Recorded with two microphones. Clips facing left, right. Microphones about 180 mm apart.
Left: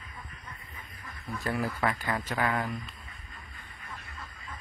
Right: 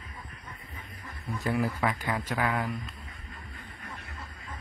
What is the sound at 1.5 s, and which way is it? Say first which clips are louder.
Speech: right 1 dB; 5° right (ahead or behind).